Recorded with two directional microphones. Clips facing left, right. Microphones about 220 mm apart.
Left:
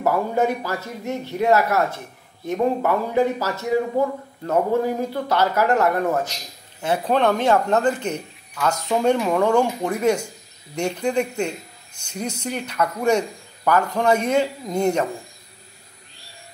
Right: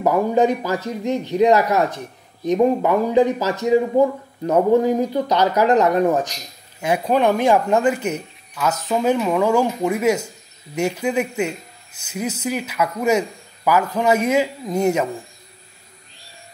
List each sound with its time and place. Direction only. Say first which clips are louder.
0.0 s speech: right 4 dB; 20° right (ahead or behind)